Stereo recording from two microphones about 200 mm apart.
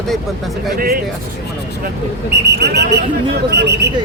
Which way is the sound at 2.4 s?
55° right (ahead or behind).